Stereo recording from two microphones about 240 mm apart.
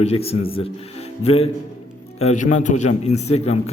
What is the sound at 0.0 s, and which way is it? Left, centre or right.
A man's voice, left.